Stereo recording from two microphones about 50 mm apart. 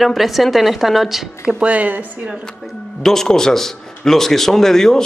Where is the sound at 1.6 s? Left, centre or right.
Right.